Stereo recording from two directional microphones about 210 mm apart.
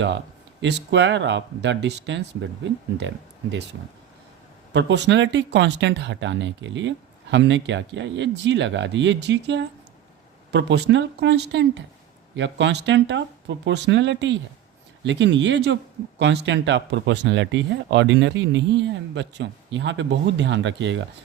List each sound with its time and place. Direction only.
0.6 s speech: 60° right (ahead or behind)
4.7 s speech: 60° right (ahead or behind)